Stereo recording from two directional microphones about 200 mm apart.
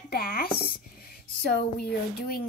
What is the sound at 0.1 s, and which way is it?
Speech, 50° left (ahead or behind).